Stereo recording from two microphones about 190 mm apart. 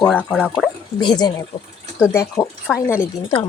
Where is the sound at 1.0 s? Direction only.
25° left (ahead or behind).